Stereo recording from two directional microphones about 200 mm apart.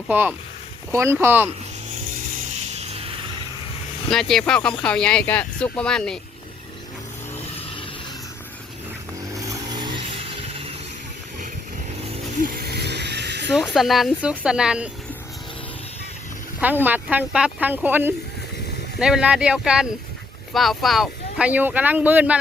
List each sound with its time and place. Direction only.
0.1 s speech: 10° right (ahead or behind)
2.3 s a sound: 35° right (ahead or behind)
4.1 s speech: centre (ahead or behind)
9.3 s vehicle: 15° right (ahead or behind)
12.4 s a sound: 50° right (ahead or behind)
13.5 s speech: centre (ahead or behind)
16.6 s speech: 10° right (ahead or behind)